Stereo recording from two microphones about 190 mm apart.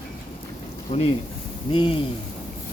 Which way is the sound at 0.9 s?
35° left (ahead or behind).